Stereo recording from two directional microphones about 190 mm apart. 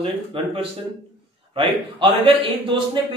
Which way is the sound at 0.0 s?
30° right (ahead or behind).